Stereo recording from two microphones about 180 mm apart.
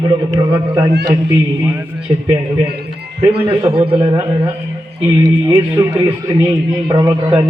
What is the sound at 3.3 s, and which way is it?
Speech, 30° right (ahead or behind).